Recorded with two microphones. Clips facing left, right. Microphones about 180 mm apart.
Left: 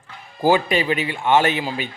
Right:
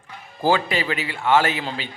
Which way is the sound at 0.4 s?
20° left (ahead or behind).